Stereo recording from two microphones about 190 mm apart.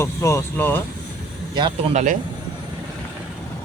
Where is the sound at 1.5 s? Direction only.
25° right (ahead or behind).